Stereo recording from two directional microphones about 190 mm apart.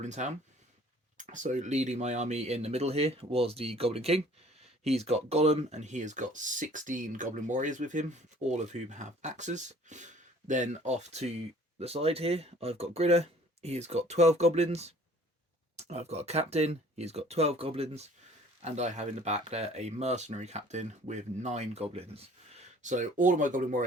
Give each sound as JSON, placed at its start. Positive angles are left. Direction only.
{"t": 0.0, "sound": "speech", "side_deg": -40}